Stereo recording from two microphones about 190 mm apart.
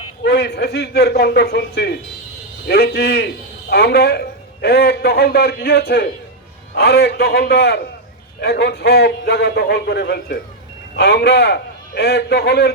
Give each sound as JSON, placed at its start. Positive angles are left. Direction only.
{"t": 0.2, "sound": "a man's voice", "side_deg": 60}